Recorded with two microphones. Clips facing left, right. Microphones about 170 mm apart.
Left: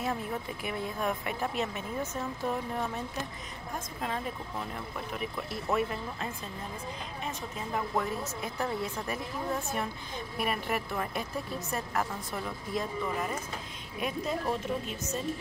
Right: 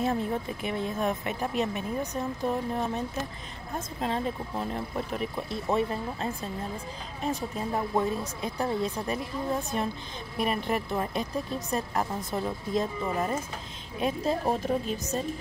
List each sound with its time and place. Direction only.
0.0 s a woman's voice: 30° right (ahead or behind)
7.9 s a woman's voice: 20° right (ahead or behind); by 15.1 s 40° right (ahead or behind)